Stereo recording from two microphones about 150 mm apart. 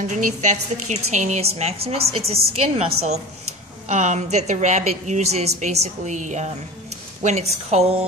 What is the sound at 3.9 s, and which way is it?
A woman's voice, 50° right (ahead or behind).